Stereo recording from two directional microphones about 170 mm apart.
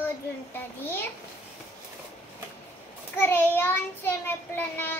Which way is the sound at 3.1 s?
15° left (ahead or behind).